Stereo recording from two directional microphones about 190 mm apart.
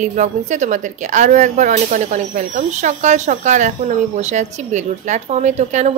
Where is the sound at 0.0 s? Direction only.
40° right (ahead or behind).